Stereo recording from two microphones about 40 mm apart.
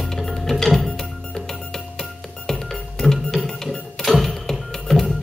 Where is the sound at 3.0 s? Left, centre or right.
Centre.